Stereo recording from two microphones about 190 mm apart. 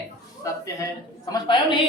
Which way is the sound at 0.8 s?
20° left (ahead or behind).